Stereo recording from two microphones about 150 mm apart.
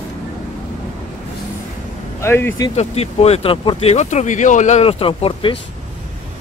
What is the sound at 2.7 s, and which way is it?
Speech, 45° left (ahead or behind).